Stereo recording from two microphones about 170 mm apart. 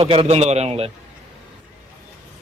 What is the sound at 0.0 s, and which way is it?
Speech, 35° right (ahead or behind).